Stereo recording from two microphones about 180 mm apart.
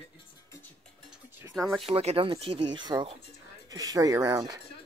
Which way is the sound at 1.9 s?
35° right (ahead or behind).